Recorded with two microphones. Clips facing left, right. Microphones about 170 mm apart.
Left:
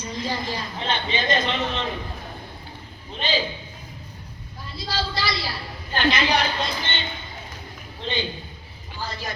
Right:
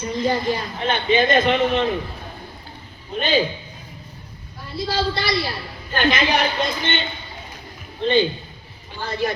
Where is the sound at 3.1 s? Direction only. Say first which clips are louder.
Right 6 dB; 50° right (ahead or behind).